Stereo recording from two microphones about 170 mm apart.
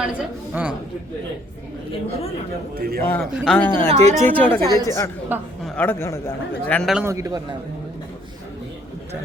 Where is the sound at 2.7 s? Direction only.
65° right (ahead or behind).